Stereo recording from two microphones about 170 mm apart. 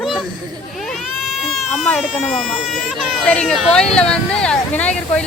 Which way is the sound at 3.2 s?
5° left (ahead or behind).